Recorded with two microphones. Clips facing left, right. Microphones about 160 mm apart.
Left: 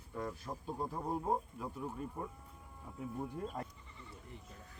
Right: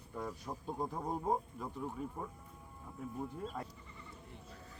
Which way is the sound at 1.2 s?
5° left (ahead or behind).